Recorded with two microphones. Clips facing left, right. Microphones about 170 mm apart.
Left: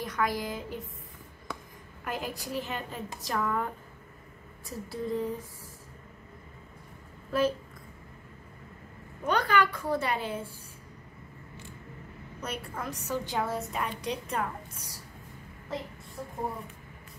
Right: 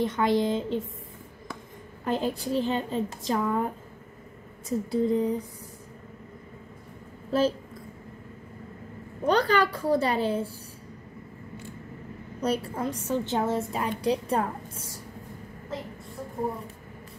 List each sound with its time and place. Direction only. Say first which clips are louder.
0.0 s a woman's voice: right 7 dB; 25° right (ahead or behind)
2.0 s a woman's voice: right 8 dB; 30° right (ahead or behind)
7.2 s a woman's voice: right 3 dB; 30° right (ahead or behind)
9.2 s a woman's voice: right 4 dB; 35° right (ahead or behind)
12.4 s a woman's voice: right 9 dB; 30° right (ahead or behind)